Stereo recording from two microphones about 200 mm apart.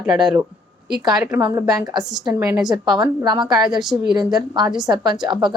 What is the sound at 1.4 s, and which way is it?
A woman's voice, 20° right (ahead or behind).